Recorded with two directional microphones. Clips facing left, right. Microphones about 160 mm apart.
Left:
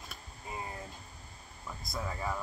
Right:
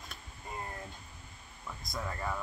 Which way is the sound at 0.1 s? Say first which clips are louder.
Left 1 dB; 5° left (ahead or behind).